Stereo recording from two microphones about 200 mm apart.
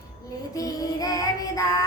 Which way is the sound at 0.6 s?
20° left (ahead or behind).